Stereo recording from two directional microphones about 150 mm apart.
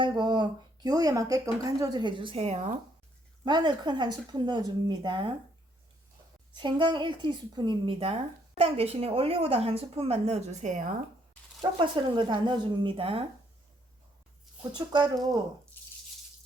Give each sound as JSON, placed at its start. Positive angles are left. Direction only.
{"t": 0.0, "sound": "speech", "side_deg": -30}
{"t": 3.4, "sound": "a woman's voice", "side_deg": -30}
{"t": 6.6, "sound": "a woman's voice", "side_deg": -30}
{"t": 11.8, "sound": "a woman's voice", "side_deg": -35}
{"t": 14.8, "sound": "a woman's voice", "side_deg": -30}